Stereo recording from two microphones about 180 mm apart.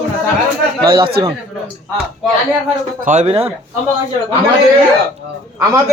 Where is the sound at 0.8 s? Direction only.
30° right (ahead or behind).